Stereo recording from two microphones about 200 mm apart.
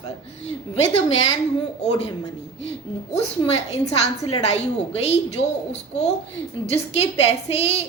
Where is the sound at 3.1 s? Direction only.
30° left (ahead or behind).